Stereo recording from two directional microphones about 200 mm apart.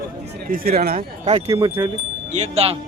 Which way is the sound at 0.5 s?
45° right (ahead or behind).